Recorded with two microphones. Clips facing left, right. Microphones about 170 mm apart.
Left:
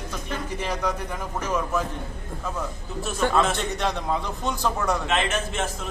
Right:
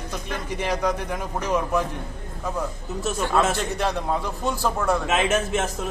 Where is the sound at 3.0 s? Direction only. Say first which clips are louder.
Even; centre (ahead or behind).